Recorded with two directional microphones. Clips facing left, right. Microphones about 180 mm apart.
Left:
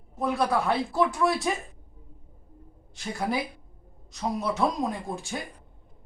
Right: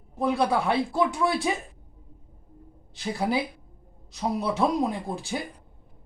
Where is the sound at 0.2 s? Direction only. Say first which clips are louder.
Right 2 dB; centre (ahead or behind).